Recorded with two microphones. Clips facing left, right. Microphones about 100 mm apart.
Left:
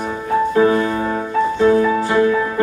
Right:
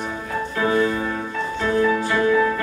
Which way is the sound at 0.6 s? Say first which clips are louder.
Left 2 dB; 30° left (ahead or behind).